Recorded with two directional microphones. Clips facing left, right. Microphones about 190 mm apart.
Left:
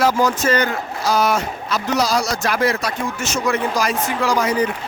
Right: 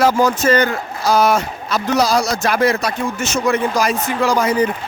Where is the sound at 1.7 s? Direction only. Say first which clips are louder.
Right 3 dB; 55° right (ahead or behind).